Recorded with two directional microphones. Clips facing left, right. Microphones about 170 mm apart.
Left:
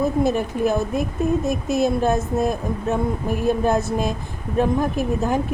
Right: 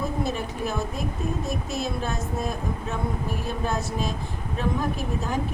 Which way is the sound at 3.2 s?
50° left (ahead or behind).